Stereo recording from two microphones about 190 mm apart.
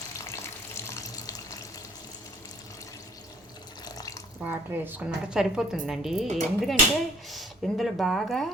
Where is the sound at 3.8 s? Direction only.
20° left (ahead or behind).